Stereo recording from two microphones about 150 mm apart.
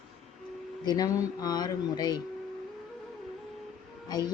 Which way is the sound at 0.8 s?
25° left (ahead or behind).